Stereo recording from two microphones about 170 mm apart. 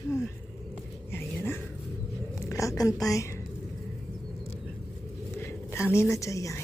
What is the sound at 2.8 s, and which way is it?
Speech, 20° left (ahead or behind).